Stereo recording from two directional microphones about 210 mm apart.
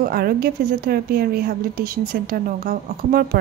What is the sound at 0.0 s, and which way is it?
A woman's voice, 45° right (ahead or behind).